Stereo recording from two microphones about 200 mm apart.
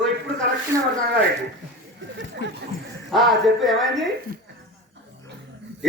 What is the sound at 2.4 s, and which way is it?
Speech, 60° left (ahead or behind).